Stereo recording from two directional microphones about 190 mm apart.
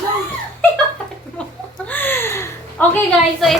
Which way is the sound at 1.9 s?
10° left (ahead or behind).